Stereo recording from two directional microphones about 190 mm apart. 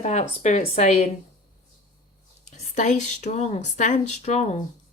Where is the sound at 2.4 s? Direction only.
40° left (ahead or behind).